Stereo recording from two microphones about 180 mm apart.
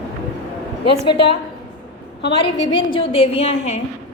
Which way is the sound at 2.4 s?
30° left (ahead or behind).